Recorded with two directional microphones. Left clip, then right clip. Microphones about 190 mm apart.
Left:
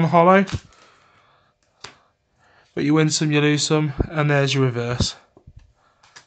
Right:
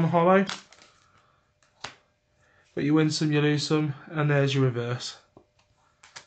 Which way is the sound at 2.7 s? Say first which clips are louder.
Left 5 dB; 45° left (ahead or behind).